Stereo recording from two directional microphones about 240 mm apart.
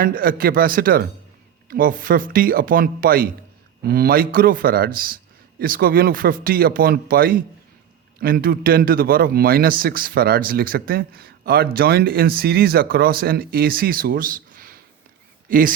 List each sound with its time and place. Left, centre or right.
0.0 s a man's voice: right